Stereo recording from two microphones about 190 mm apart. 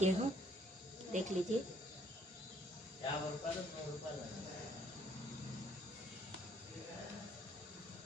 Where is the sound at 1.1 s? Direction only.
40° right (ahead or behind).